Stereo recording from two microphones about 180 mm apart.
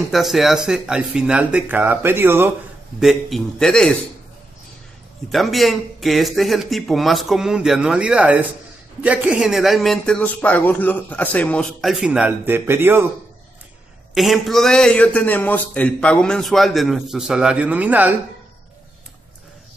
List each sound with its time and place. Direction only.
0.1 s a man's voice: centre (ahead or behind)
3.0 s a man's voice: centre (ahead or behind)
5.3 s a man's voice: centre (ahead or behind)
14.1 s a man's voice: centre (ahead or behind)